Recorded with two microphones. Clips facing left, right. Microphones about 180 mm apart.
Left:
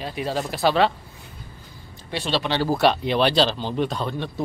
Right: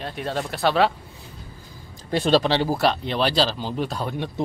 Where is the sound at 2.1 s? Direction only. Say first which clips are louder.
Right 6 dB; 45° right (ahead or behind).